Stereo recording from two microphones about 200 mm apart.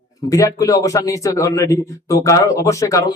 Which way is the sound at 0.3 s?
15° left (ahead or behind).